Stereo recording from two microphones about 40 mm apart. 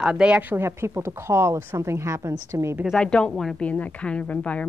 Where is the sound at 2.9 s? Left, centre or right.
Left.